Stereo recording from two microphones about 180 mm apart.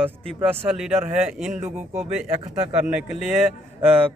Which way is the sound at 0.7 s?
5° right (ahead or behind).